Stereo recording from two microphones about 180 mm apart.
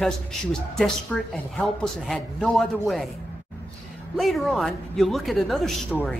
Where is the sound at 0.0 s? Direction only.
5° left (ahead or behind).